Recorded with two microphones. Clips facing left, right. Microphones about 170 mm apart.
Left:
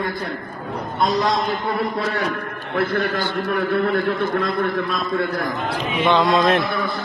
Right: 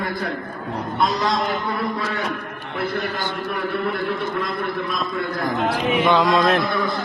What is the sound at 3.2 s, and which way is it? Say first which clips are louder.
Speech: left 4 dB; 40° left (ahead or behind).